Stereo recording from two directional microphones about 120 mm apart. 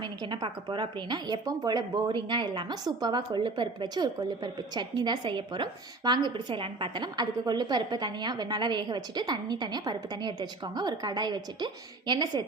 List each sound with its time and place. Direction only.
0.0 s a woman's voice: 40° right (ahead or behind)